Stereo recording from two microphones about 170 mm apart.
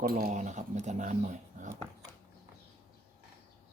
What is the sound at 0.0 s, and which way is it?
Speech, 60° right (ahead or behind).